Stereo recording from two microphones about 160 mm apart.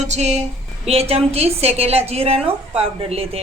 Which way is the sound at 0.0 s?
45° right (ahead or behind).